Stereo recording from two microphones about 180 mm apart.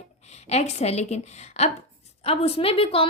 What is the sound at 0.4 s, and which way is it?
A woman's voice, 40° left (ahead or behind).